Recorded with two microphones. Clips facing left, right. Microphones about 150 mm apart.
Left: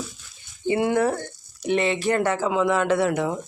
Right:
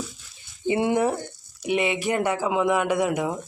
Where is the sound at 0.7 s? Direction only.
20° right (ahead or behind).